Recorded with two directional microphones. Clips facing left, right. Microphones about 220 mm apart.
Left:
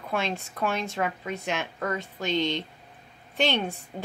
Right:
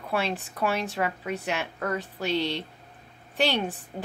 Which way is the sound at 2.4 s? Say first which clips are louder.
Left 3 dB; 35° right (ahead or behind).